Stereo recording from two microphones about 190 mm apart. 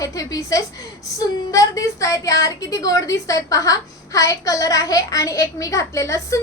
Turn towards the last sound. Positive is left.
turn(degrees=15)  # may be behind; listen again after turning